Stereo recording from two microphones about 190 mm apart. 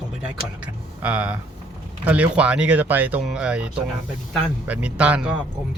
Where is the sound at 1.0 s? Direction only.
5° right (ahead or behind).